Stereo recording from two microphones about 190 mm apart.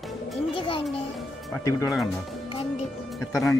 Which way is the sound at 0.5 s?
25° left (ahead or behind).